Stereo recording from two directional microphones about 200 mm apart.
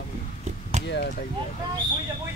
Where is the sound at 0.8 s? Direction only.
35° right (ahead or behind).